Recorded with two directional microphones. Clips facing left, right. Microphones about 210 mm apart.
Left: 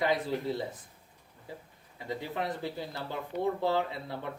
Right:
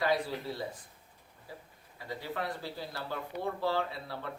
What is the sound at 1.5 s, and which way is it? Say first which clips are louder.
Speech: left 3 dB; 20° left (ahead or behind).